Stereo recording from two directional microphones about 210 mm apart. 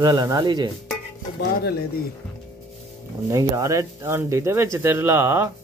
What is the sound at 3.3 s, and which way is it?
Speech, 15° right (ahead or behind).